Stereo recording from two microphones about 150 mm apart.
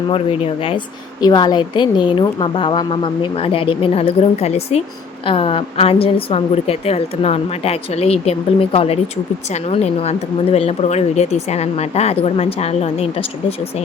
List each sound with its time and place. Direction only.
0.1 s a woman's voice: 40° left (ahead or behind)